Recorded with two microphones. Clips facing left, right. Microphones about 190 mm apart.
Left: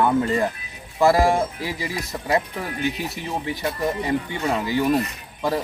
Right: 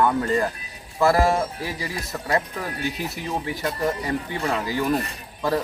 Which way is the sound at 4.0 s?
20° left (ahead or behind).